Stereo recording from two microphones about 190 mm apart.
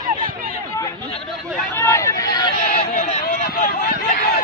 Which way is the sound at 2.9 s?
40° left (ahead or behind).